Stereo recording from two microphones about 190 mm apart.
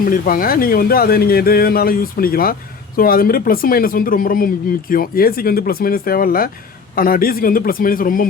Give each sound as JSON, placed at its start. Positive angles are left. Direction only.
{"t": 0.0, "sound": "speech", "side_deg": 50}